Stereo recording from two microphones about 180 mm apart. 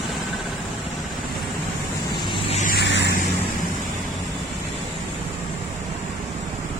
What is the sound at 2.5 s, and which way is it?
Vehicle, 45° left (ahead or behind).